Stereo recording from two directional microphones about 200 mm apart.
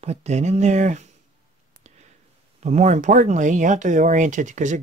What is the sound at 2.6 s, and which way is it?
Speech, 35° right (ahead or behind).